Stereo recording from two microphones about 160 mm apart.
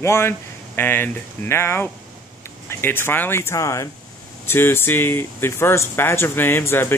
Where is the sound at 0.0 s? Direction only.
15° left (ahead or behind).